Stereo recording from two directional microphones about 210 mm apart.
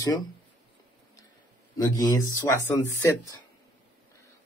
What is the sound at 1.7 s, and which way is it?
Speech, 15° left (ahead or behind).